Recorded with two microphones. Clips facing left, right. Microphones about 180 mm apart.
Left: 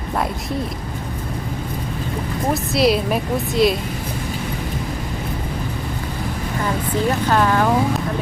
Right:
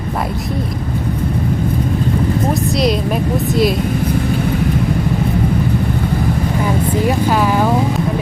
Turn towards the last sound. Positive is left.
turn(degrees=-10)  # may be behind; listen again after turning